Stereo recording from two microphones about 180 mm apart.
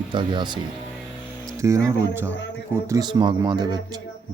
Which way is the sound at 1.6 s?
15° right (ahead or behind).